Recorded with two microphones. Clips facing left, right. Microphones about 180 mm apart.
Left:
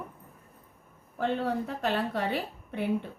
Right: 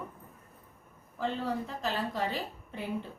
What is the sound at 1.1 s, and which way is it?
A woman's voice, 60° left (ahead or behind).